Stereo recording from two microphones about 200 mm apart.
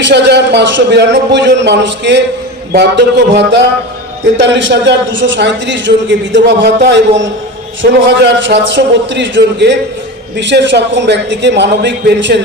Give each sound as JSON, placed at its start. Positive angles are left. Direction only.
{"t": 0.1, "sound": "a man's voice", "side_deg": -60}